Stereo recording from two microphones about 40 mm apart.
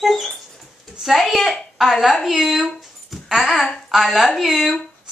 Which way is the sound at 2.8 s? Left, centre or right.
Centre.